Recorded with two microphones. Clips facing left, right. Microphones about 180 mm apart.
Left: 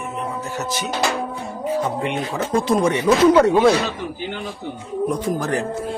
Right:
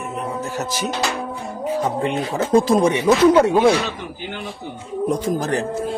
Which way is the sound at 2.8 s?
15° right (ahead or behind).